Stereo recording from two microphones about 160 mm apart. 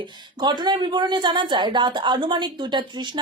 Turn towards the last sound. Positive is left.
turn(degrees=-30)  # may be behind; listen again after turning